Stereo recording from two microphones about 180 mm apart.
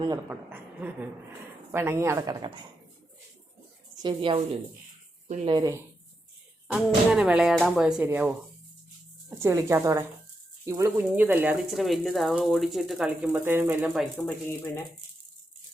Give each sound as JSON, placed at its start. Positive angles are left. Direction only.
{"t": 0.3, "sound": "speech", "side_deg": -10}
{"t": 4.0, "sound": "a woman's voice", "side_deg": -30}
{"t": 5.5, "sound": "a woman's voice", "side_deg": -20}
{"t": 6.7, "sound": "speech", "side_deg": -5}
{"t": 9.3, "sound": "speech", "side_deg": -15}
{"t": 14.0, "sound": "speech", "side_deg": 10}